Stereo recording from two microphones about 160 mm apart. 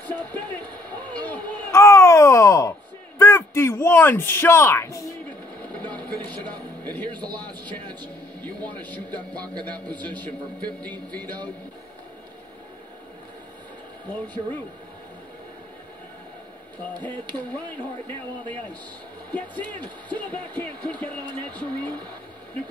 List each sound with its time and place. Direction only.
0.0 s a sound: 10° left (ahead or behind)
7.1 s a man's voice: 25° right (ahead or behind)
8.8 s speech: 10° left (ahead or behind)
19.3 s speech: 10° left (ahead or behind)